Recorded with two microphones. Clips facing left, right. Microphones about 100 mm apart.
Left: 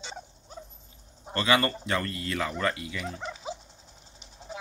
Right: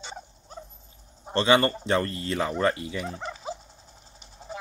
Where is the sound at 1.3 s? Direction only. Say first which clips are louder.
Right 4 dB; 30° right (ahead or behind).